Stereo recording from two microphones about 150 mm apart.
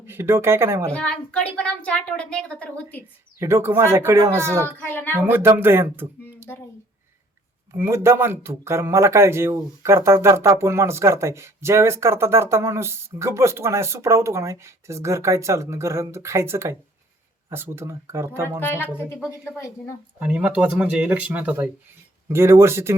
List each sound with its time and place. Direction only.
0.0 s speech: 15° right (ahead or behind)
0.9 s a woman's voice: 5° left (ahead or behind)
3.4 s a man's voice: 15° right (ahead or behind)
4.8 s a woman's voice: 15° left (ahead or behind)
5.1 s speech: 15° right (ahead or behind)
7.7 s a man's voice: 15° right (ahead or behind)
18.6 s a woman's voice: 15° left (ahead or behind)
20.1 s a man's voice: 10° right (ahead or behind)